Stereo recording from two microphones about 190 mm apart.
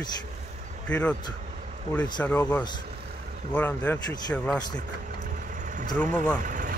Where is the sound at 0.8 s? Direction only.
5° left (ahead or behind).